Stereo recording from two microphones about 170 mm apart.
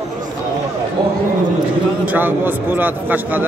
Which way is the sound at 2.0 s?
10° right (ahead or behind).